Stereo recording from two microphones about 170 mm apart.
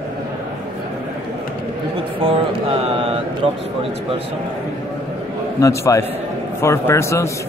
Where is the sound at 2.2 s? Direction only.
35° right (ahead or behind).